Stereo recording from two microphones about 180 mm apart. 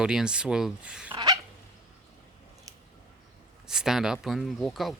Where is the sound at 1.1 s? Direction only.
20° right (ahead or behind).